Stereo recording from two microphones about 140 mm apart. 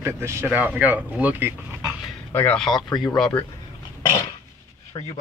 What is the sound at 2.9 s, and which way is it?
Speech, 30° left (ahead or behind).